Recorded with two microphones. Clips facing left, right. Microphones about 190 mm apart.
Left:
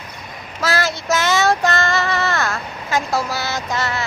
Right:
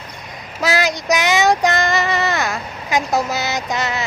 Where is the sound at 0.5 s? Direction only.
15° right (ahead or behind).